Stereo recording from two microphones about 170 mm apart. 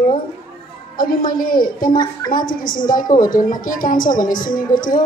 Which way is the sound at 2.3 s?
55° left (ahead or behind).